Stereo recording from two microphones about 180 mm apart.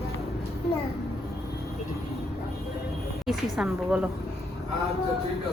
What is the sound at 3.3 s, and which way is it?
Speech, 5° right (ahead or behind).